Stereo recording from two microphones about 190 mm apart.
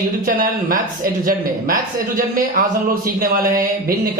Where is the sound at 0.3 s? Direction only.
45° right (ahead or behind).